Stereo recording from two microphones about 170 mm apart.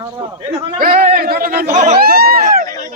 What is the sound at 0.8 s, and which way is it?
Speech, 60° right (ahead or behind).